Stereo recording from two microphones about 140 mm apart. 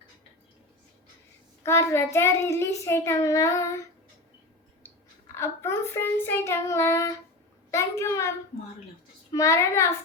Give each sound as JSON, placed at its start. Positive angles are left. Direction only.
{"t": 1.6, "sound": "child singing", "side_deg": 20}
{"t": 5.4, "sound": "child singing", "side_deg": 20}
{"t": 9.3, "sound": "child singing", "side_deg": 20}